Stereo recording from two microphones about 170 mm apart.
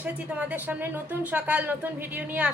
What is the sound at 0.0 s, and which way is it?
A woman's voice, 10° right (ahead or behind).